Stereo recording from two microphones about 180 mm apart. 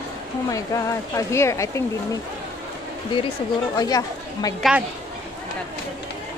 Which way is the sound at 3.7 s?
20° left (ahead or behind).